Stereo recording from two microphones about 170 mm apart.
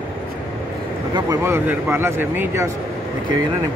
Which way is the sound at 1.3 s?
15° right (ahead or behind).